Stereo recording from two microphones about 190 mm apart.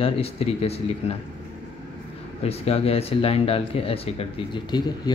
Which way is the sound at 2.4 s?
30° left (ahead or behind).